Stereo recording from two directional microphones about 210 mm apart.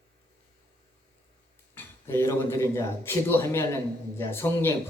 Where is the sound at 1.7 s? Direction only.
10° left (ahead or behind).